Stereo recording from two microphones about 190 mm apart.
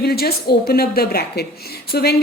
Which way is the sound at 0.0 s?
55° left (ahead or behind).